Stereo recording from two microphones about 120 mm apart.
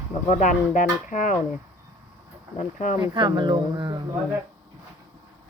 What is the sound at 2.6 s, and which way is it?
Speech, 90° left.